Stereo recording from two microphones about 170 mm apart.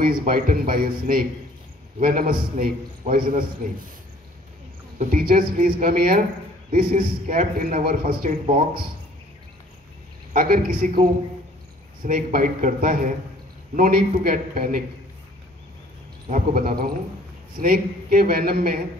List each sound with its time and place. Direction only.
0.0 s a man's voice: 55° right (ahead or behind)
4.9 s a man's voice: 55° right (ahead or behind)
10.3 s a man's voice: 60° right (ahead or behind)
16.3 s a man's voice: 55° right (ahead or behind)